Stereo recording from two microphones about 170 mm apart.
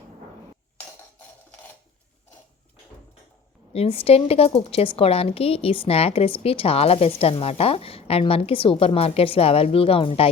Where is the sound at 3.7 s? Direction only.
35° left (ahead or behind).